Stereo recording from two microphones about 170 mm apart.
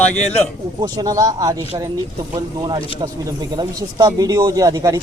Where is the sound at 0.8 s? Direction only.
20° right (ahead or behind).